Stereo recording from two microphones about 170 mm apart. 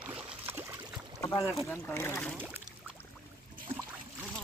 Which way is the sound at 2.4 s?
10° right (ahead or behind).